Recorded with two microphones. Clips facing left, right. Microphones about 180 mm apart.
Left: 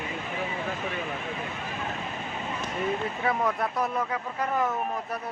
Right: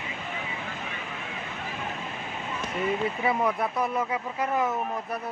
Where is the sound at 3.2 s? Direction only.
10° right (ahead or behind).